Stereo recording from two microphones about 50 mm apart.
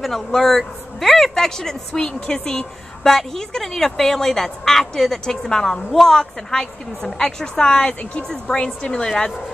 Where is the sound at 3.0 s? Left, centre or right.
Centre.